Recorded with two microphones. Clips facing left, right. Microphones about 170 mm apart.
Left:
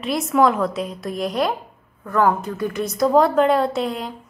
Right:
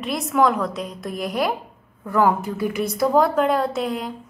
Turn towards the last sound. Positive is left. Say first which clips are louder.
# left 1 dB
turn(degrees=0)  # may be behind; listen again after turning